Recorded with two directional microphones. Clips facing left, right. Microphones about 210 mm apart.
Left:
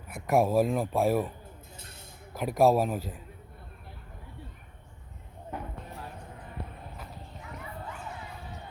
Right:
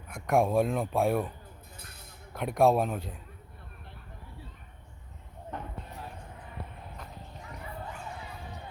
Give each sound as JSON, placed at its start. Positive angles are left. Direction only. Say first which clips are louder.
{"t": 0.1, "sound": "speech", "louder": "left 1 dB", "side_deg": 5}
{"t": 2.3, "sound": "speech", "louder": "left 1 dB", "side_deg": 0}
{"t": 5.5, "sound": "a sound", "louder": "left 1 dB", "side_deg": 5}